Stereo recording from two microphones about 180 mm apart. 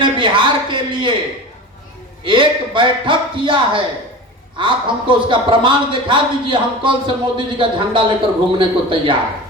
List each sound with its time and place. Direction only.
0.0 s a man's voice: 25° right (ahead or behind)
2.2 s a man's voice: 25° right (ahead or behind)